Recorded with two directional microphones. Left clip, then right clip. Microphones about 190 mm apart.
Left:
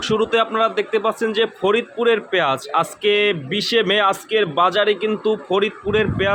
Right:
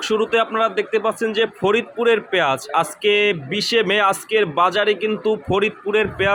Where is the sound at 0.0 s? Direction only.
Centre (ahead or behind).